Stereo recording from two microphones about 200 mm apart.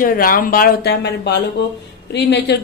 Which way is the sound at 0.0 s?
45° left (ahead or behind).